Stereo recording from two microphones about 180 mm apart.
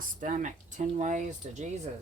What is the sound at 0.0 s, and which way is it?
Speech, 45° right (ahead or behind).